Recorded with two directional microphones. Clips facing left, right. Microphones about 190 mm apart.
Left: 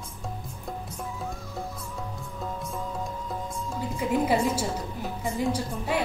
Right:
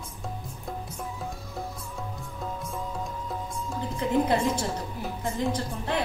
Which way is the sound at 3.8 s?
10° left (ahead or behind).